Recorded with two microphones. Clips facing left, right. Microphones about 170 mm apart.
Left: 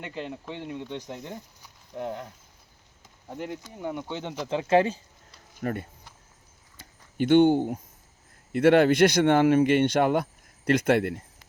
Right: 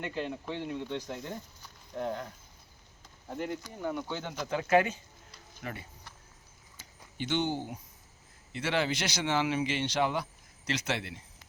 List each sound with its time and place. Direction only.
0.0 s speech: centre (ahead or behind)
0.5 s speech: 10° left (ahead or behind)
0.9 s speech: 20° left (ahead or behind)
3.6 s speech: 20° left (ahead or behind)
5.6 s speech: 50° left (ahead or behind)
6.7 s a sound: 55° left (ahead or behind)
8.5 s speech: 55° left (ahead or behind)